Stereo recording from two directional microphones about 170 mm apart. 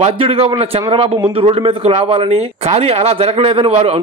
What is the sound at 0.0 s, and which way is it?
A man's voice, 35° right (ahead or behind).